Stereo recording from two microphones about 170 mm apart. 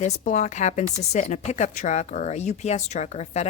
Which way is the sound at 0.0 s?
45° left (ahead or behind).